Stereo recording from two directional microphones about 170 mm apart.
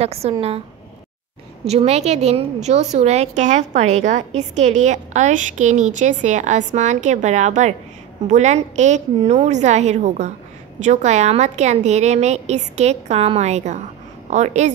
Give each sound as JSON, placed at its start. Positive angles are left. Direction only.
{"t": 0.0, "sound": "a woman's voice", "side_deg": -35}
{"t": 1.6, "sound": "a woman's voice", "side_deg": -40}